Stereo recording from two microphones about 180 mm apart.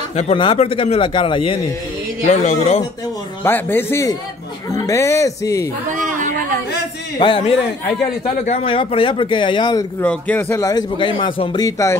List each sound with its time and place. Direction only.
0.1 s a man's voice: 35° left (ahead or behind)
3.4 s speech: 10° left (ahead or behind)
5.9 s chatter: 45° right (ahead or behind)
7.2 s speech: 30° left (ahead or behind)
9.9 s speech: 10° left (ahead or behind)